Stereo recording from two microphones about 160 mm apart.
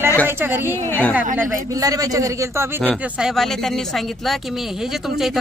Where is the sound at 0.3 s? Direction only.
15° right (ahead or behind).